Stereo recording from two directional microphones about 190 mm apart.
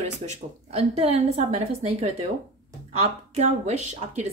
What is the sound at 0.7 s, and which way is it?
A woman's voice, 30° right (ahead or behind).